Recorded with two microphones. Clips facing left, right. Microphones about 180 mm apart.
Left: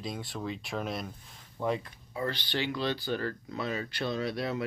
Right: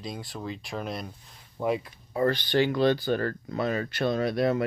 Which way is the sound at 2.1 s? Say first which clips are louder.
Right 9 dB; 45° right (ahead or behind).